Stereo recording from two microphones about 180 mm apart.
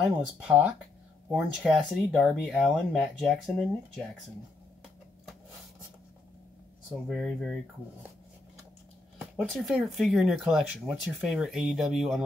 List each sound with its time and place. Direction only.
0.0 s speech: 5° right (ahead or behind)
6.9 s speech: centre (ahead or behind)
9.2 s speech: centre (ahead or behind)